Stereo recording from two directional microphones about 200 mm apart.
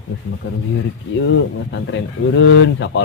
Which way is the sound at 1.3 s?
65° left (ahead or behind).